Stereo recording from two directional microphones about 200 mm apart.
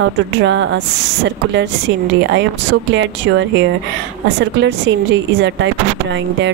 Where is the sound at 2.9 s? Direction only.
60° right (ahead or behind).